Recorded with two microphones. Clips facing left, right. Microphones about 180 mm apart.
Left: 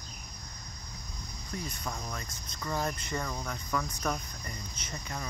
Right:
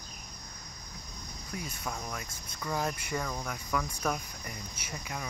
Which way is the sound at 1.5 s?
10° right (ahead or behind).